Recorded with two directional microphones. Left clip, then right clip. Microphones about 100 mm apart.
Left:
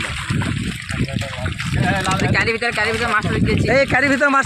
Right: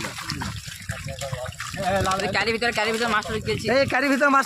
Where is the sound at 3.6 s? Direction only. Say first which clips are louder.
Left 5 dB; 50° left (ahead or behind).